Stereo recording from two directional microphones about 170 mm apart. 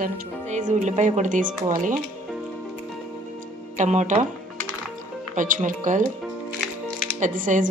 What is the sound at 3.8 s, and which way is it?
Speech, 45° right (ahead or behind).